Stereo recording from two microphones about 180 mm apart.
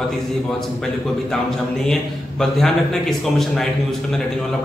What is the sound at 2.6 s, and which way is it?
A man's voice, centre (ahead or behind).